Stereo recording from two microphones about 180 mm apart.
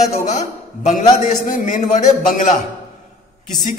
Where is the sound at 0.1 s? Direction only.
40° left (ahead or behind).